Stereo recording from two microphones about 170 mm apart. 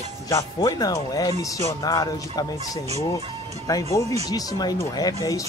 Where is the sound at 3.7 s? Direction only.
20° left (ahead or behind).